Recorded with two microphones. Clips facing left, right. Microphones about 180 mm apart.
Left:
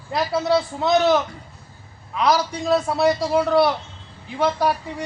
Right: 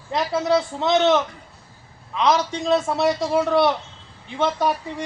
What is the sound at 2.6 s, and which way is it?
Speech, centre (ahead or behind).